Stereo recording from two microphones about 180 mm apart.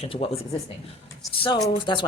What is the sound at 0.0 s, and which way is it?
Speech, 30° left (ahead or behind).